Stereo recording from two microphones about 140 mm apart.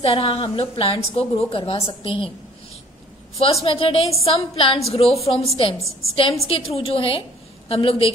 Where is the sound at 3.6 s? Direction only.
40° left (ahead or behind).